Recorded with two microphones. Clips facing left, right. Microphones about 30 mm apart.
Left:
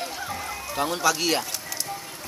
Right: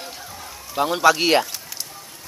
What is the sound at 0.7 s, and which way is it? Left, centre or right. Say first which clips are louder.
Speech: right 7 dB; centre.